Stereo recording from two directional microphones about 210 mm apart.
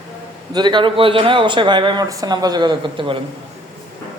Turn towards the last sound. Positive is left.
turn(degrees=-20)  # may be behind; listen again after turning